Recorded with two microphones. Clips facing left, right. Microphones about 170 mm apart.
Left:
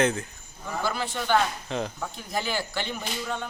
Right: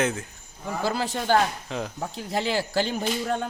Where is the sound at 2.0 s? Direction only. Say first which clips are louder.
Right 3 dB; 30° right (ahead or behind).